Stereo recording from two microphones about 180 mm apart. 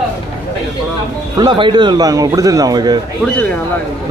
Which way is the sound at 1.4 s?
25° right (ahead or behind).